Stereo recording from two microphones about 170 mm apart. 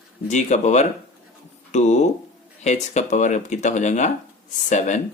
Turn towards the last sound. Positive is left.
turn(degrees=45)  # may be behind; listen again after turning